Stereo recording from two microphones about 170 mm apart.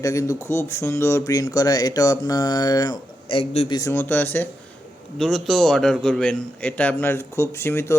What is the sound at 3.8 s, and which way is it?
A man's voice, 15° left (ahead or behind).